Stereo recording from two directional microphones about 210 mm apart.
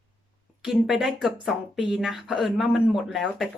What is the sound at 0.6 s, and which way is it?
Speech, centre (ahead or behind).